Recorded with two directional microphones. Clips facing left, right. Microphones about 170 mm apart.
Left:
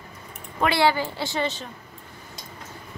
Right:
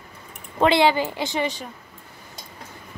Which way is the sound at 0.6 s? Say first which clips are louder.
Right 3 dB; 20° right (ahead or behind).